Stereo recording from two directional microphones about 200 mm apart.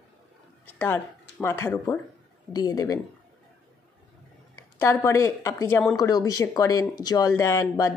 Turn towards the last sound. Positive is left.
turn(degrees=15)  # may be behind; listen again after turning